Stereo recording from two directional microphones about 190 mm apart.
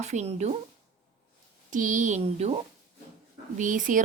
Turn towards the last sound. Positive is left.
turn(degrees=-45)  # may be behind; listen again after turning